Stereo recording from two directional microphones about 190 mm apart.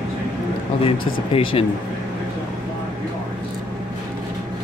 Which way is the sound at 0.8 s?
30° left (ahead or behind).